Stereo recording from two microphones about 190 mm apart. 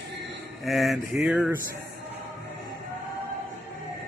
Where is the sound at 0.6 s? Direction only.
Centre (ahead or behind).